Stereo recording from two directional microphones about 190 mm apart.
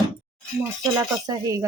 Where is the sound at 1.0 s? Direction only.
20° right (ahead or behind).